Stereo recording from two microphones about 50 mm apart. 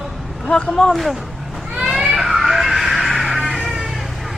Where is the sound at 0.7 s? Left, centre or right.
Centre.